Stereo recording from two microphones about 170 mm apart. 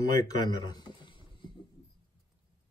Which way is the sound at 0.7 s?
25° left (ahead or behind).